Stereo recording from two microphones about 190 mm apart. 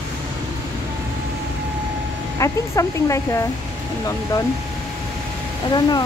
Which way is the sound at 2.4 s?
15° left (ahead or behind).